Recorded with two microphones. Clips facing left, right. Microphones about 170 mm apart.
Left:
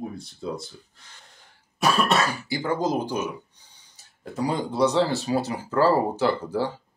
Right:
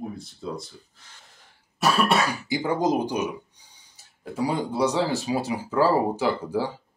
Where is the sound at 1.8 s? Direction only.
10° right (ahead or behind).